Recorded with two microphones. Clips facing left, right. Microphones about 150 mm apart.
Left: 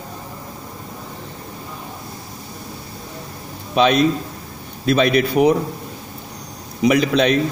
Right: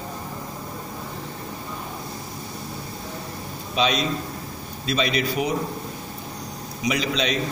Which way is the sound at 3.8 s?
55° left (ahead or behind).